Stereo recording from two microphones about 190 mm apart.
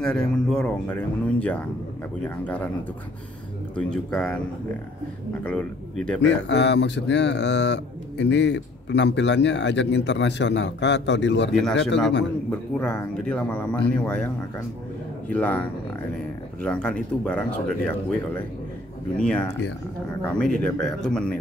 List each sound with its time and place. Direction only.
0.0 s speech: 5° left (ahead or behind)
3.7 s speech: 5° left (ahead or behind)
5.4 s speech: 5° left (ahead or behind)
6.2 s speech: 65° left (ahead or behind)
11.5 s speech: 5° left (ahead or behind)
16.6 s speech: 5° left (ahead or behind)